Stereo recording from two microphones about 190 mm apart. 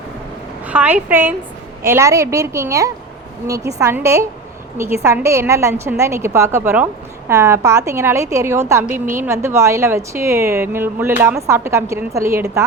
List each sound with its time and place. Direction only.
0.7 s a woman's voice: 5° right (ahead or behind)